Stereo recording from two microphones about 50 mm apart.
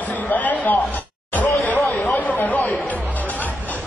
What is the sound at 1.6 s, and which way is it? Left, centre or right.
Chatter, left.